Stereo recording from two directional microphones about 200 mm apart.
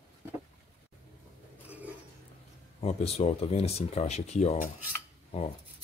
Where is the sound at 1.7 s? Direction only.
5° right (ahead or behind).